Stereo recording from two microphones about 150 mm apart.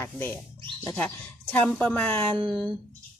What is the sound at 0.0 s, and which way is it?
Speech, 15° left (ahead or behind).